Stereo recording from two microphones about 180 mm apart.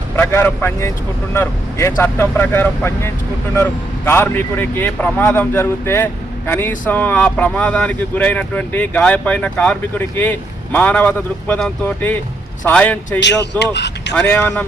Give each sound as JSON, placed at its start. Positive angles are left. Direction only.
{"t": 0.2, "sound": "a man's voice", "side_deg": 10}
{"t": 13.1, "sound": "speech", "side_deg": 75}
{"t": 14.2, "sound": "a man's voice", "side_deg": 10}